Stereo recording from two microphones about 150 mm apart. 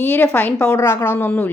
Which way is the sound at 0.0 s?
10° left (ahead or behind).